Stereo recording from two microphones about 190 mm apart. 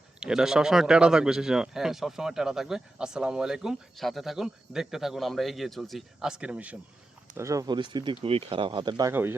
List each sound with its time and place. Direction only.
0.2 s speech: 5° right (ahead or behind)
7.3 s speech: 15° right (ahead or behind)